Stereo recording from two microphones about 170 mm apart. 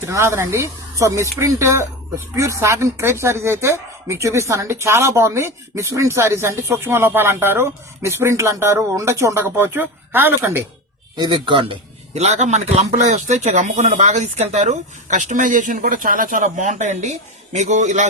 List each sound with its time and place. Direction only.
0.1 s speech: 15° right (ahead or behind)
11.2 s a man's voice: 30° right (ahead or behind); by 18.1 s 45° right (ahead or behind)